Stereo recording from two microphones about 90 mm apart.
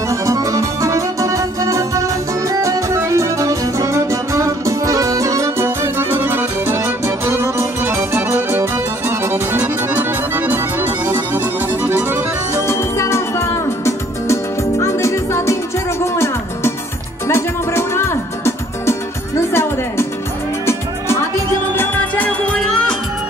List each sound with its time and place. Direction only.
0.1 s music: 40° right (ahead or behind); by 12.2 s 20° right (ahead or behind)
12.6 s music: 30° left (ahead or behind)
17.3 s music: 30° left (ahead or behind)
21.7 s music: 20° left (ahead or behind)